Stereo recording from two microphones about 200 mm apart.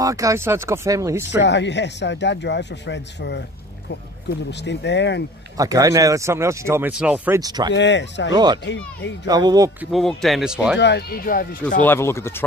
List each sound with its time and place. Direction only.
0.0 s speech: 15° right (ahead or behind)
1.3 s speech: 60° left (ahead or behind)
4.5 s speech: 60° left (ahead or behind)
5.6 s speech: 15° right (ahead or behind)
7.3 s speech: 20° right (ahead or behind)
7.7 s speech: 60° left (ahead or behind)
9.3 s speech: 20° right (ahead or behind)
9.8 s speech: centre (ahead or behind)
10.8 s speech: 55° left (ahead or behind)
11.8 s speech: 10° left (ahead or behind)